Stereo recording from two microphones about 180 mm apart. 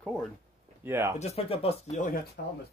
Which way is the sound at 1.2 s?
35° left (ahead or behind).